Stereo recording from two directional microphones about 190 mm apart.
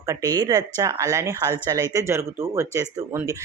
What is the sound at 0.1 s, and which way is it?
Speech, 20° right (ahead or behind).